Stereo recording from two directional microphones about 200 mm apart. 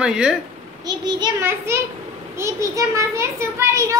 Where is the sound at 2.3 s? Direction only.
15° right (ahead or behind).